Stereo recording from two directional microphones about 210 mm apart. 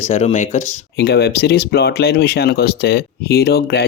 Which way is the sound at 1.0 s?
50° left (ahead or behind).